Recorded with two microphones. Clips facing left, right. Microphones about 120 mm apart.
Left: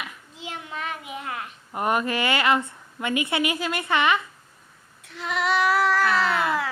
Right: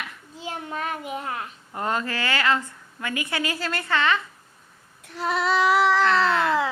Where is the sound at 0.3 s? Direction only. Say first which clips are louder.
Right 3 dB; 40° right (ahead or behind).